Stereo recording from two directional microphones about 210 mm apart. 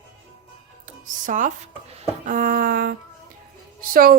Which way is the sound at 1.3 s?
35° right (ahead or behind).